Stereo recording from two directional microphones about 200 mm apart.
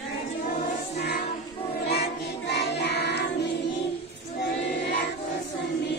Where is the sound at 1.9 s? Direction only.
55° left (ahead or behind).